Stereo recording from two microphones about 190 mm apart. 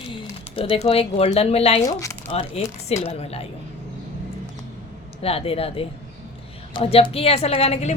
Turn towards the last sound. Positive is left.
turn(degrees=30)  # may be behind; listen again after turning